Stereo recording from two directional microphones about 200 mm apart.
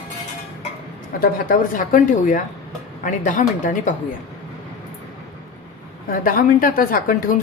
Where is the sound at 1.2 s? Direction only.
45° left (ahead or behind).